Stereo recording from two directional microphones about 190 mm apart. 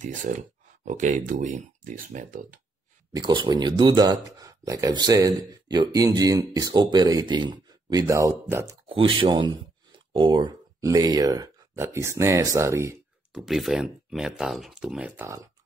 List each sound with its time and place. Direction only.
0.0 s speech: 40° right (ahead or behind)
3.2 s speech: 25° right (ahead or behind)
8.8 s speech: 30° right (ahead or behind)
13.3 s speech: centre (ahead or behind)